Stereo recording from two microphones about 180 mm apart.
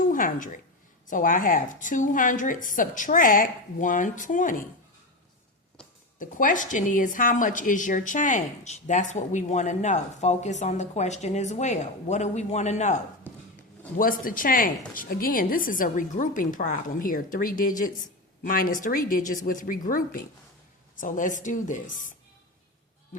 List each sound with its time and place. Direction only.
0.1 s a woman's voice: 50° left (ahead or behind)
6.1 s a woman's voice: 45° left (ahead or behind)
14.0 s speech: 50° left (ahead or behind)